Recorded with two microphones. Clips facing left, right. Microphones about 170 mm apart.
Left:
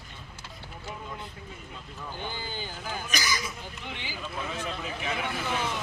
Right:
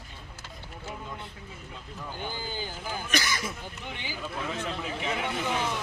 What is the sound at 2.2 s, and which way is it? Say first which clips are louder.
Speech: right 2 dB; 10° right (ahead or behind).